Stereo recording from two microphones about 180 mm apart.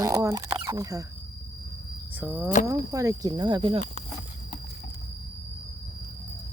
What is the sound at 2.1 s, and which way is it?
Cricket, 10° right (ahead or behind).